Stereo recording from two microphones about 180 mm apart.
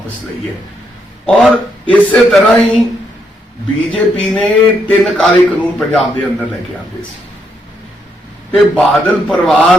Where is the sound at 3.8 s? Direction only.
5° left (ahead or behind).